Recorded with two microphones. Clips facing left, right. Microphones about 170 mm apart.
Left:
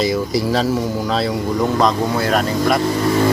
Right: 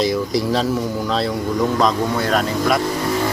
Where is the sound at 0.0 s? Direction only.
Centre (ahead or behind).